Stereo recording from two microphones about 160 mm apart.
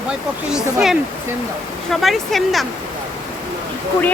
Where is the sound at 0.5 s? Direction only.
5° right (ahead or behind).